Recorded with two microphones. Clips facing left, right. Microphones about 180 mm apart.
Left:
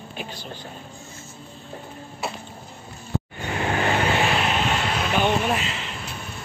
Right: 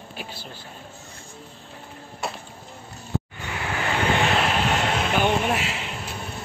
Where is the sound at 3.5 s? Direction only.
35° left (ahead or behind).